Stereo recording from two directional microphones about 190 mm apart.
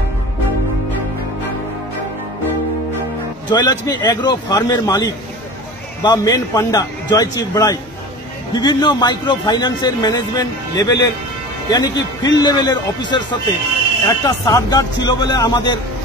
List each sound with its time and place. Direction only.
3.4 s a man's voice: 20° left (ahead or behind)